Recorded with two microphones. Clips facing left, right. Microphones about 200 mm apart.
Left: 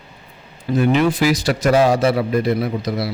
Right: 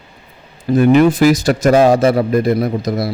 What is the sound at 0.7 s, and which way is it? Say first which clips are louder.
A man's voice: right 6 dB; 50° right (ahead or behind).